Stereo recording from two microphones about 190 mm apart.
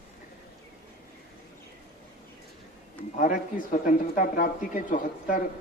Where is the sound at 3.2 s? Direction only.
40° left (ahead or behind).